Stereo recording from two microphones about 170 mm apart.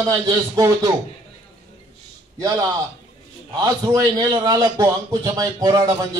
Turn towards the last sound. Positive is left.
turn(degrees=-20)  # may be behind; listen again after turning